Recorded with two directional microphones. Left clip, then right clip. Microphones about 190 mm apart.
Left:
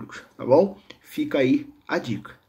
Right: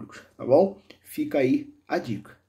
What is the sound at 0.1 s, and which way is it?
Speech, 15° left (ahead or behind).